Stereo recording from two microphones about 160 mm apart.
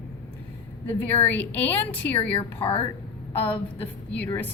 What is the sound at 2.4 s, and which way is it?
Speech, 35° left (ahead or behind).